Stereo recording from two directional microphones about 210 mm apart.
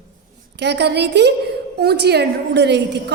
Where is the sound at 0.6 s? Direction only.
55° right (ahead or behind).